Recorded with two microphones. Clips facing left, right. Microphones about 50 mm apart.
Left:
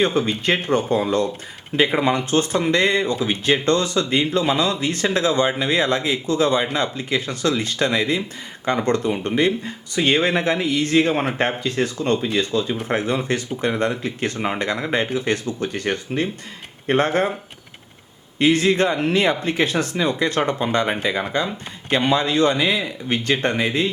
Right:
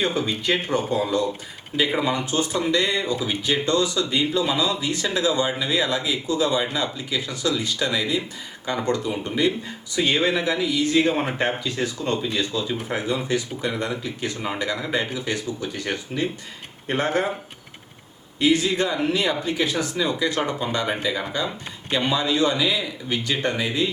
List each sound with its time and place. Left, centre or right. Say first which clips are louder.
0.0 s speech: left 4 dB; left
18.3 s speech: left 3 dB; left